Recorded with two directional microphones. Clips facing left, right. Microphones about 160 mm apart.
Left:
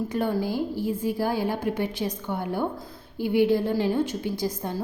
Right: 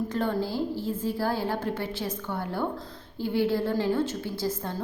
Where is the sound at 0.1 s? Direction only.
10° left (ahead or behind).